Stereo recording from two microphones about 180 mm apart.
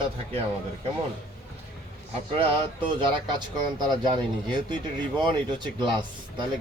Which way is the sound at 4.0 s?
25° right (ahead or behind).